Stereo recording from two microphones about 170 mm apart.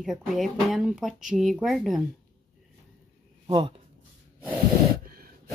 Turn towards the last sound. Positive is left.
turn(degrees=-60)  # may be behind; listen again after turning